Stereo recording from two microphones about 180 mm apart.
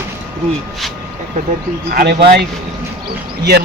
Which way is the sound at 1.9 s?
55° right (ahead or behind).